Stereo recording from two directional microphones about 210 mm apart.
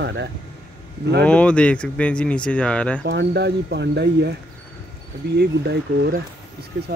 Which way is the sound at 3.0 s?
55° right (ahead or behind).